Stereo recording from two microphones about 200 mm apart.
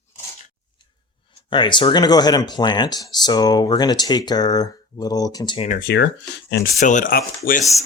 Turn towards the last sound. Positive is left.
turn(degrees=45)  # may be behind; listen again after turning